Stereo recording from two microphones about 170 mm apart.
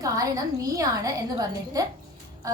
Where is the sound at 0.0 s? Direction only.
20° right (ahead or behind).